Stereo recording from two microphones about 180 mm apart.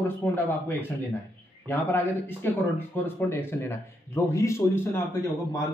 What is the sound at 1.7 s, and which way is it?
Speech, 10° left (ahead or behind).